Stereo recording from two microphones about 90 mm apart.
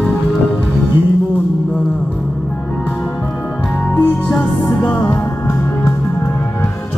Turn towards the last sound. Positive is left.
turn(degrees=20)  # may be behind; listen again after turning